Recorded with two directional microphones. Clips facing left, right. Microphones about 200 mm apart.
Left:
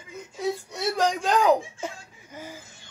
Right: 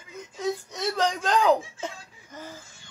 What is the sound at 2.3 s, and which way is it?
Laughter, 10° left (ahead or behind).